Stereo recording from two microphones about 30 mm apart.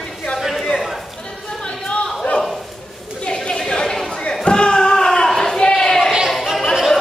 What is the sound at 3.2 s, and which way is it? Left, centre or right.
Chatter, left.